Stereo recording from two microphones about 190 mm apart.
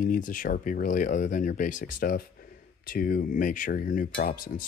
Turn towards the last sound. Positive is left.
turn(degrees=50)  # may be behind; listen again after turning